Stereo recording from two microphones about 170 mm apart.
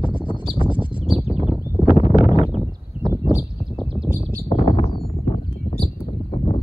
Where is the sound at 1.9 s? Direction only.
40° left (ahead or behind).